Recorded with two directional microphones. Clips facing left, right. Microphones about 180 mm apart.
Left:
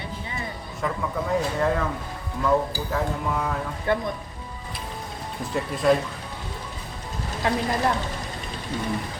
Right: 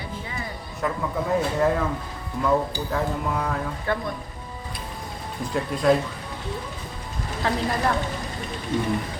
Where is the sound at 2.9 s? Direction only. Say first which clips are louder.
Right 1 dB; centre (ahead or behind).